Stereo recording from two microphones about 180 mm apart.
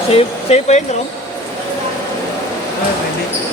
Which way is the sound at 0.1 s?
35° left (ahead or behind).